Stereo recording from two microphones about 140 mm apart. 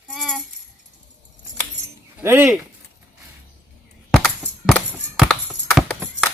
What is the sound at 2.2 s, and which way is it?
Speech, 15° right (ahead or behind).